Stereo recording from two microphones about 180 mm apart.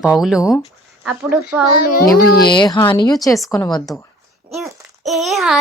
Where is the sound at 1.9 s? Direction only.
60° left (ahead or behind).